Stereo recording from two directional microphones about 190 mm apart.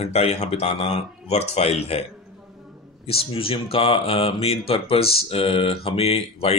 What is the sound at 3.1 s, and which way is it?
Speech, 30° left (ahead or behind).